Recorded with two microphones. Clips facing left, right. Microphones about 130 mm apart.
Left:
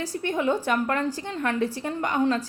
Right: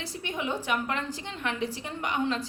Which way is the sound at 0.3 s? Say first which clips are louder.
Left 6 dB; 50° left (ahead or behind).